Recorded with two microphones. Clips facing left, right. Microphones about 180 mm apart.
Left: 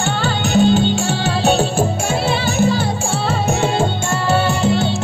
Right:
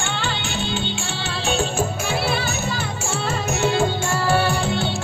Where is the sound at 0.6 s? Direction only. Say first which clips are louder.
Left 17 dB; 45° left (ahead or behind).